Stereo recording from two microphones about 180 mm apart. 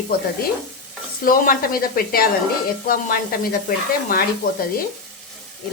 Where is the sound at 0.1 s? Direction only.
55° left (ahead or behind).